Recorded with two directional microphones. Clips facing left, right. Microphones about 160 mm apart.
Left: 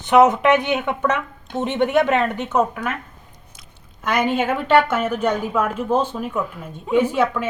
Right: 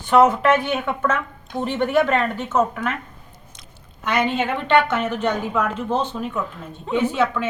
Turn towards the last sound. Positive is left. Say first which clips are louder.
# left 2 dB
turn(degrees=10)  # may be behind; listen again after turning